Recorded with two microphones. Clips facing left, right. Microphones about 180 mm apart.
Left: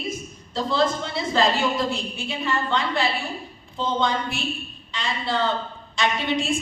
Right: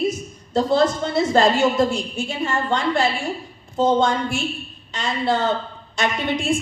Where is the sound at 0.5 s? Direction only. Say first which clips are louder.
Right 5 dB; 45° right (ahead or behind).